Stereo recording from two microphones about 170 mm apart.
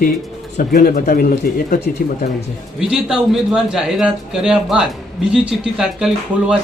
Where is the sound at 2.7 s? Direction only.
5° right (ahead or behind).